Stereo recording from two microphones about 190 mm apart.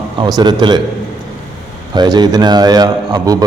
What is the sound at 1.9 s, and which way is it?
A man's voice, 20° right (ahead or behind).